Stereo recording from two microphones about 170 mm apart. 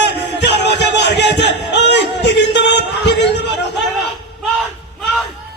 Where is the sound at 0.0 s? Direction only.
90° left.